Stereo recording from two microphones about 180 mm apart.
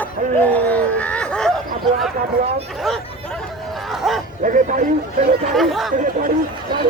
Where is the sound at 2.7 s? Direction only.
Centre (ahead or behind).